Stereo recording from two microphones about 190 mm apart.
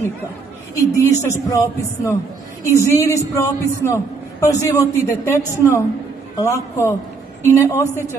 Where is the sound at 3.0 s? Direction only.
15° left (ahead or behind).